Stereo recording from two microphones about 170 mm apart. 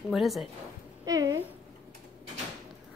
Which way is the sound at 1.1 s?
20° right (ahead or behind).